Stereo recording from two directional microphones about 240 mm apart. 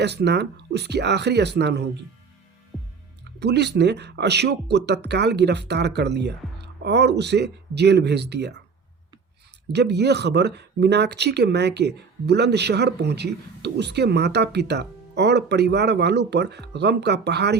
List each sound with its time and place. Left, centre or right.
0.0 s speech: right
2.7 s music: centre
3.4 s speech: right
9.7 s speech: right